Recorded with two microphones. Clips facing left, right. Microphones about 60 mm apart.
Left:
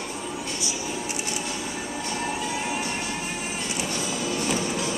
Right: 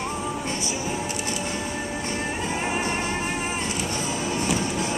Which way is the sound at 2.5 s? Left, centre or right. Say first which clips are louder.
Right 3 dB; right.